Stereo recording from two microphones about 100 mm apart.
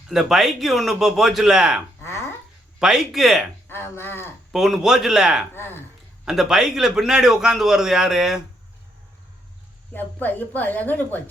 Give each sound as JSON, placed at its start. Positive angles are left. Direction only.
{"t": 0.1, "sound": "a man's voice", "side_deg": -5}
{"t": 2.0, "sound": "a sound", "side_deg": 25}
{"t": 2.7, "sound": "a man's voice", "side_deg": -5}
{"t": 3.7, "sound": "speech", "side_deg": 25}
{"t": 4.5, "sound": "a man's voice", "side_deg": -5}
{"t": 5.5, "sound": "speech", "side_deg": 25}
{"t": 6.2, "sound": "a man's voice", "side_deg": -5}
{"t": 9.9, "sound": "a woman's voice", "side_deg": 20}